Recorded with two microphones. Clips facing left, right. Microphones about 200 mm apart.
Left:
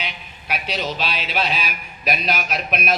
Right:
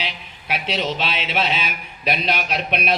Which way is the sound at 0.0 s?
25° right (ahead or behind).